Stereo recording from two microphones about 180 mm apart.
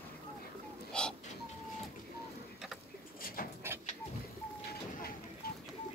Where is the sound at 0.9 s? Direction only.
5° left (ahead or behind).